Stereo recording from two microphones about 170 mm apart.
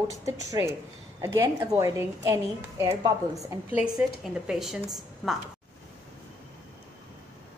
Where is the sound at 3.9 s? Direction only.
Centre (ahead or behind).